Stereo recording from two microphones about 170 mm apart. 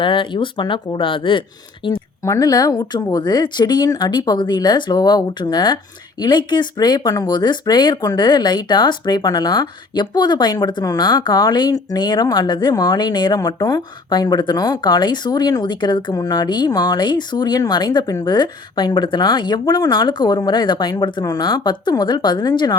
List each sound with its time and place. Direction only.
0.0 s speech: 30° left (ahead or behind)